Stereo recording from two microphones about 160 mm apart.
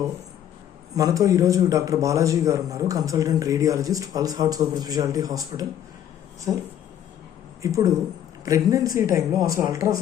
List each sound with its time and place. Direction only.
0.9 s a man's voice: 20° right (ahead or behind)
7.6 s a man's voice: 20° right (ahead or behind)